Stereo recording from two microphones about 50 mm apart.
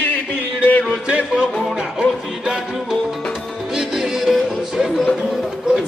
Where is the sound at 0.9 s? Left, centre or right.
Centre.